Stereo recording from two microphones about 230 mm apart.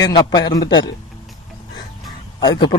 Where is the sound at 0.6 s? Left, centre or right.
Left.